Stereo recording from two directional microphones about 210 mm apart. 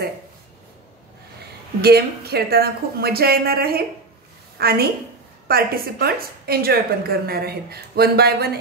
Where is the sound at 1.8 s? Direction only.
50° right (ahead or behind).